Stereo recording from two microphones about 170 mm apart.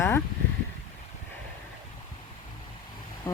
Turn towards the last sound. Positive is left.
turn(degrees=15)  # may be behind; listen again after turning